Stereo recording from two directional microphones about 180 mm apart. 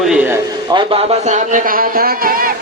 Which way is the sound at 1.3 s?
45° right (ahead or behind).